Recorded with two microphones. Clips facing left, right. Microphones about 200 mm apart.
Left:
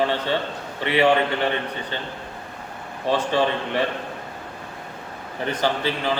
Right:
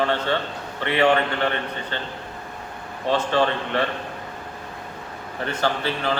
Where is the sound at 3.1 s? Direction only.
15° left (ahead or behind).